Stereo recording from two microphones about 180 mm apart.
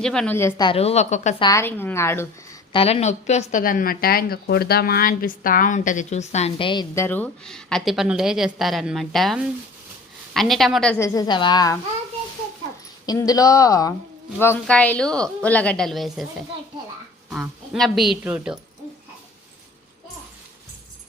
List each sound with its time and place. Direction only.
0.0 s a woman's voice: 5° left (ahead or behind)
0.6 s a woman's voice: 30° left (ahead or behind)
1.4 s a woman's voice: 20° left (ahead or behind)
2.7 s a woman's voice: 35° left (ahead or behind)
6.9 s a woman's voice: 10° left (ahead or behind)
11.1 s speech: 25° left (ahead or behind)
13.1 s a woman's voice: 20° left (ahead or behind); by 16.2 s centre (ahead or behind)
17.2 s a woman's voice: 5° right (ahead or behind)